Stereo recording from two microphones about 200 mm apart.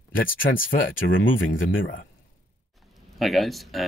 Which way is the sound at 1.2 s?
70° left (ahead or behind).